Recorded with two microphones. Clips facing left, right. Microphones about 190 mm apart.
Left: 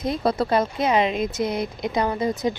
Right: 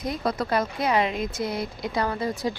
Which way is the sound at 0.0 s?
30° left (ahead or behind).